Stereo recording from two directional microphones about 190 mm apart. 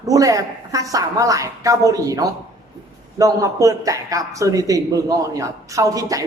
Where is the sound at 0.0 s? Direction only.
20° right (ahead or behind).